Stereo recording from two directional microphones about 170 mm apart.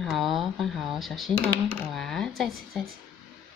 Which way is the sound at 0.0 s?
Centre (ahead or behind).